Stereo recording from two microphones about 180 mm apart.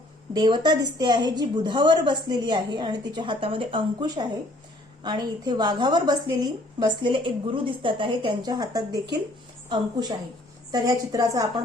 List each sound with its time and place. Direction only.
0.3 s a woman's voice: 25° right (ahead or behind)